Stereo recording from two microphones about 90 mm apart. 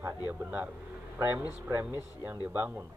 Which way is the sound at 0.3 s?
20° right (ahead or behind).